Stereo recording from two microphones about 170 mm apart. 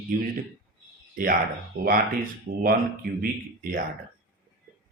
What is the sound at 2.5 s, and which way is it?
Speech, 50° right (ahead or behind).